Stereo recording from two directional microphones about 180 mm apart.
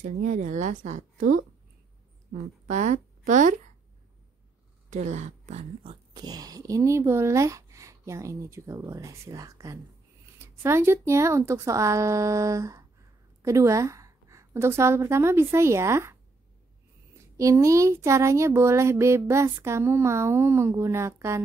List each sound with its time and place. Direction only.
0.0 s speech: 45° right (ahead or behind)
2.6 s a woman's voice: 40° right (ahead or behind)
4.8 s speech: 40° right (ahead or behind)
6.1 s a woman's voice: 20° right (ahead or behind)
17.4 s speech: 15° right (ahead or behind)